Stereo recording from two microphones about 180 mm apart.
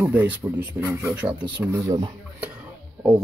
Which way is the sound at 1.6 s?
20° right (ahead or behind).